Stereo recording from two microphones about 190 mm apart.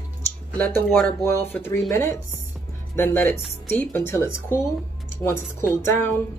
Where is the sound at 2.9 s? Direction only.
10° left (ahead or behind).